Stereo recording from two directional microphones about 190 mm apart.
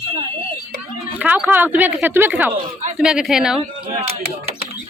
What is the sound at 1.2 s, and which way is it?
Speech, 10° right (ahead or behind).